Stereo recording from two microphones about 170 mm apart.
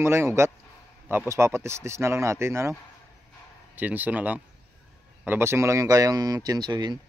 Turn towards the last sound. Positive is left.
turn(degrees=-25)  # may be behind; listen again after turning